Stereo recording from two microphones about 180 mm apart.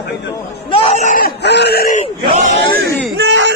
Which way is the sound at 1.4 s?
70° left (ahead or behind).